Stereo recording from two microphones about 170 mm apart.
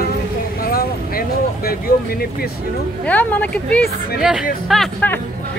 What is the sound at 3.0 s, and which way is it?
Speech, 10° left (ahead or behind).